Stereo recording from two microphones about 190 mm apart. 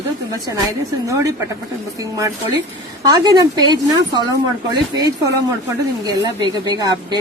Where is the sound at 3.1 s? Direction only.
20° right (ahead or behind).